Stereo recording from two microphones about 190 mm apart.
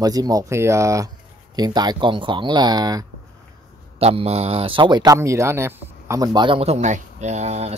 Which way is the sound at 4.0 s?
35° right (ahead or behind).